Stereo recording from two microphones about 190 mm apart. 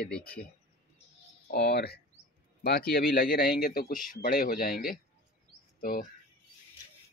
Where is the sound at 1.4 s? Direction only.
55° left (ahead or behind).